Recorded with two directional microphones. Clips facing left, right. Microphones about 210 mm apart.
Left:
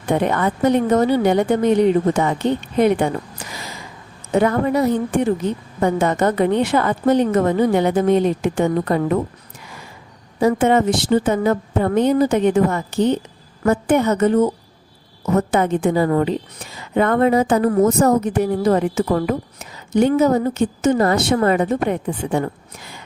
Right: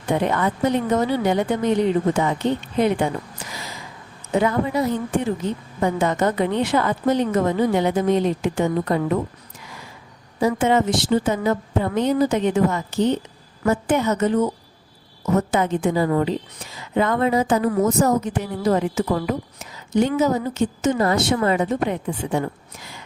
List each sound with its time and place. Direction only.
0.1 s a woman's voice: 55° left (ahead or behind)
4.4 s a woman's voice: 55° left (ahead or behind)
10.4 s a woman's voice: 55° left (ahead or behind)